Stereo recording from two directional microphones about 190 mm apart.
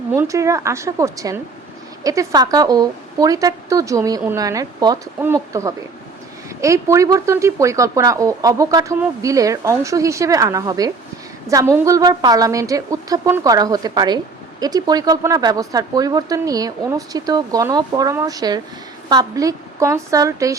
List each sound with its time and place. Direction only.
0.1 s a woman's voice: 15° right (ahead or behind)